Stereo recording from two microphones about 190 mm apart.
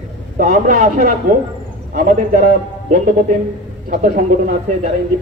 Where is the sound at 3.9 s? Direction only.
45° right (ahead or behind).